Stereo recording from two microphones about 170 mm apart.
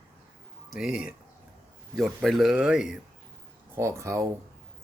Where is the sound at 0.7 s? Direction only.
5° right (ahead or behind).